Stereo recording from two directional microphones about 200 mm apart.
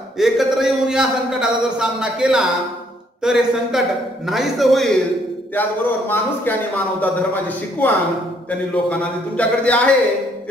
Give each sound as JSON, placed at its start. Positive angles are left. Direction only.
{"t": 0.2, "sound": "a man's voice", "side_deg": 0}